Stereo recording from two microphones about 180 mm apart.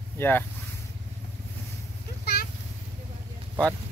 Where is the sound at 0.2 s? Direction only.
10° left (ahead or behind).